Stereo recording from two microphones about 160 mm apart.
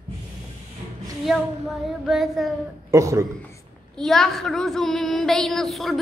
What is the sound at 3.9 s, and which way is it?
A woman's voice, centre (ahead or behind).